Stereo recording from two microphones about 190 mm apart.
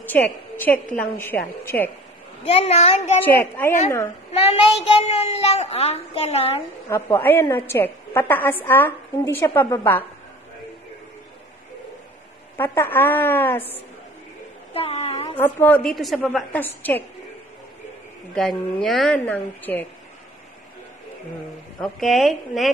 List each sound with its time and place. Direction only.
0.0 s a woman's voice: 10° left (ahead or behind)
2.4 s a child's voice: 35° left (ahead or behind)
3.3 s a woman's voice: 10° left (ahead or behind)
4.8 s a child's voice: 30° left (ahead or behind)
6.9 s a woman's voice: 15° left (ahead or behind)
12.5 s a woman's voice: 10° left (ahead or behind)
14.7 s a sound: 30° left (ahead or behind)
15.3 s a woman's voice: 10° left (ahead or behind)
18.3 s a woman's voice: 5° left (ahead or behind)
21.7 s a woman's voice: centre (ahead or behind)